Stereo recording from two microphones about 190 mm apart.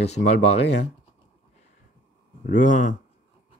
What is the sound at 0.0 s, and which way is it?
Speech, 35° left (ahead or behind).